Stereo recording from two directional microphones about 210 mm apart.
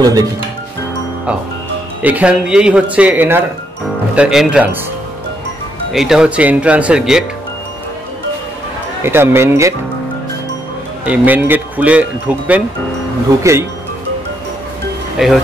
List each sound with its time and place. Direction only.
2.0 s speech: 5° right (ahead or behind)
5.9 s speech: 5° right (ahead or behind)
9.0 s speech: 10° right (ahead or behind)
11.1 s speech: 10° right (ahead or behind)
15.1 s speech: centre (ahead or behind)